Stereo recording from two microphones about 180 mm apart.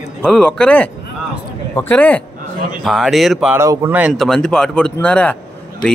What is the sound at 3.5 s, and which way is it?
A man's voice, 15° right (ahead or behind).